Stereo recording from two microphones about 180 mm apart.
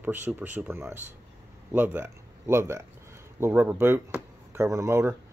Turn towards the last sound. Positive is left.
turn(degrees=-15)  # may be behind; listen again after turning